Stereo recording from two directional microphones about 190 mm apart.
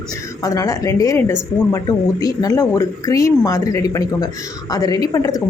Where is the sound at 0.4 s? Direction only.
15° left (ahead or behind).